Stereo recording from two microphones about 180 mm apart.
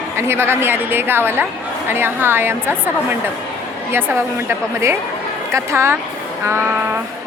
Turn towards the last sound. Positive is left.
turn(degrees=-15)  # may be behind; listen again after turning